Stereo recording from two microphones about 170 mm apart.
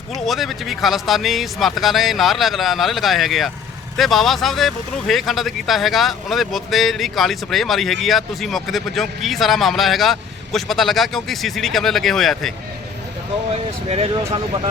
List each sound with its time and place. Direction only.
0.1 s speech: centre (ahead or behind)
13.9 s speech: 35° right (ahead or behind)